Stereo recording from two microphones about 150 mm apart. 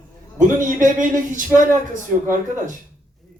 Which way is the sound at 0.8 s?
60° right (ahead or behind).